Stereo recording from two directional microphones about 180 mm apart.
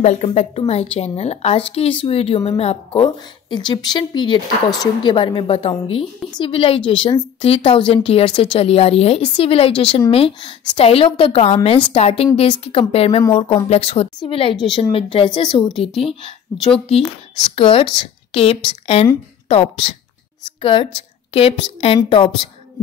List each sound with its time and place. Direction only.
0.0 s a woman's voice: 40° left (ahead or behind)
16.5 s speech: centre (ahead or behind)
17.6 s a woman's voice: 30° left (ahead or behind)